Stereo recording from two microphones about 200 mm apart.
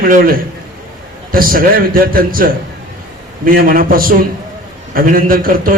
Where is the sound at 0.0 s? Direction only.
45° right (ahead or behind).